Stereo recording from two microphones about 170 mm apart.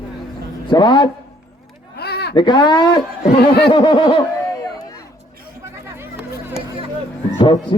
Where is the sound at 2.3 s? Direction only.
25° left (ahead or behind).